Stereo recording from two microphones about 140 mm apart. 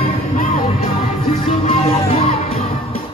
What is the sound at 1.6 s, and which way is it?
Music, 45° left (ahead or behind).